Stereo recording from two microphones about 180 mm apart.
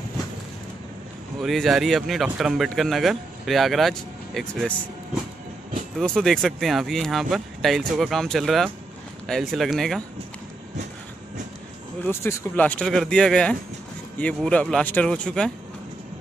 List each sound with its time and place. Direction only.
1.4 s speech: centre (ahead or behind)
5.9 s speech: centre (ahead or behind)
12.0 s speech: 15° left (ahead or behind)